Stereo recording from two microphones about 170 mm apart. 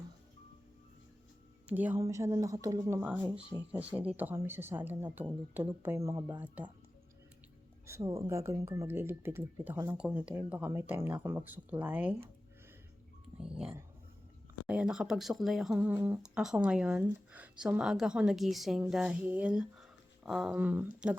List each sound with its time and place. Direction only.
1.6 s speech: 10° right (ahead or behind)
7.9 s speech: 15° right (ahead or behind)
14.7 s speech: 5° right (ahead or behind)
16.2 s speech: 5° right (ahead or behind)